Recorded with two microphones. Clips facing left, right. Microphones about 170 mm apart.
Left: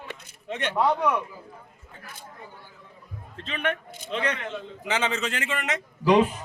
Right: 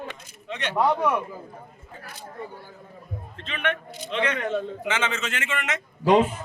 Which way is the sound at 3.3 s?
40° left (ahead or behind).